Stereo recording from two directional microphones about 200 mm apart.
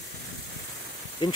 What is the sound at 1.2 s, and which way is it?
Speech, 20° left (ahead or behind).